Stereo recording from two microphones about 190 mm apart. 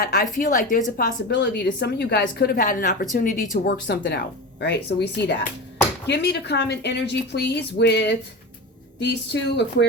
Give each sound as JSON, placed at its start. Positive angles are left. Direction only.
{"t": 0.0, "sound": "a woman's voice", "side_deg": 45}
{"t": 1.3, "sound": "a woman's voice", "side_deg": 65}
{"t": 3.8, "sound": "a woman's voice", "side_deg": 70}